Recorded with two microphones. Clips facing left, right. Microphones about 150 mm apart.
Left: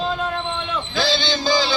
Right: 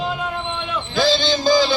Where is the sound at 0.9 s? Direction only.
45° right (ahead or behind).